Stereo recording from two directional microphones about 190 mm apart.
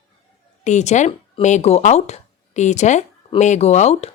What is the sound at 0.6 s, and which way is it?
Speech, 40° left (ahead or behind).